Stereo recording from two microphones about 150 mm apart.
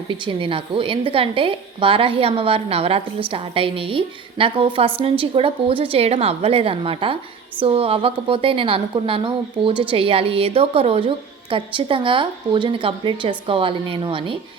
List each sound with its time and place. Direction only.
0.1 s a woman's voice: 35° right (ahead or behind)